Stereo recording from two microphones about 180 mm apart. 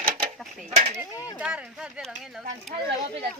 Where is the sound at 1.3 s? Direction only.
5° right (ahead or behind).